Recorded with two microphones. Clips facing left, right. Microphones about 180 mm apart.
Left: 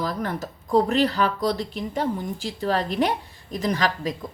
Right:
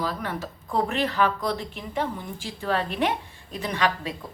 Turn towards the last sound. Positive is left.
turn(degrees=40)  # may be behind; listen again after turning